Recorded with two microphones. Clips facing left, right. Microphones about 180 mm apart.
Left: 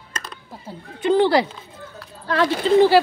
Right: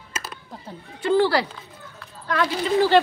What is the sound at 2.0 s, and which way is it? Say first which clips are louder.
Speech: left 3 dB; 30° left (ahead or behind).